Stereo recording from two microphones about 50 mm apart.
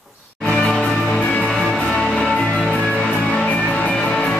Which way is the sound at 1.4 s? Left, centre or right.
Centre.